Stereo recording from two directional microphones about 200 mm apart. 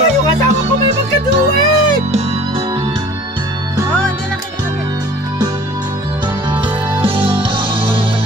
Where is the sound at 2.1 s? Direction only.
30° right (ahead or behind).